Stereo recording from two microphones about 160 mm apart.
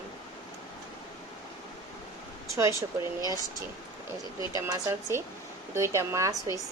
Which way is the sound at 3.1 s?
25° left (ahead or behind).